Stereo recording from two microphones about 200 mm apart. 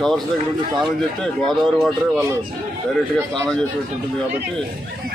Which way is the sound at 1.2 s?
5° left (ahead or behind).